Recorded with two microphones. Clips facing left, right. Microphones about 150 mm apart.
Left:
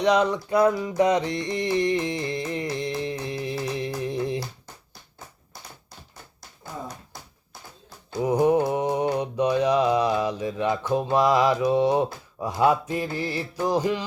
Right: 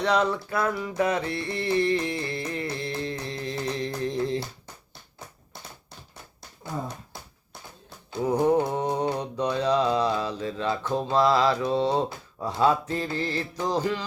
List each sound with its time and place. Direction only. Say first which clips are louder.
0.0 s music: left 3 dB; 15° left (ahead or behind)
8.2 s mantra: left 2 dB; 15° left (ahead or behind)
12.5 s music: left 2 dB; 15° left (ahead or behind)